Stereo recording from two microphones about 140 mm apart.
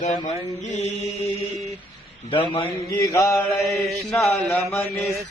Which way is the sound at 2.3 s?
35° left (ahead or behind).